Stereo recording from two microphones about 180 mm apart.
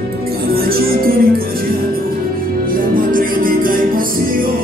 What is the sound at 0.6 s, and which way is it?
Music, 55° right (ahead or behind).